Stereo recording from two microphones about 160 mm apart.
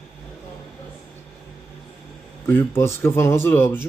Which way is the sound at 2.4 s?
15° left (ahead or behind).